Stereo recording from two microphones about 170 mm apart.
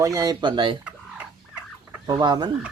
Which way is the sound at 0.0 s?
20° right (ahead or behind).